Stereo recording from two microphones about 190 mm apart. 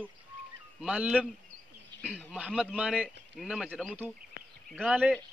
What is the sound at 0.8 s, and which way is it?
Speech, 5° right (ahead or behind).